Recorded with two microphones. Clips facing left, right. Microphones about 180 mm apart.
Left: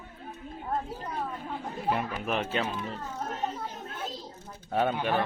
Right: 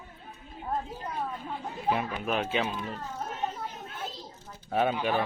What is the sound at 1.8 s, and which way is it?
Speech, centre (ahead or behind).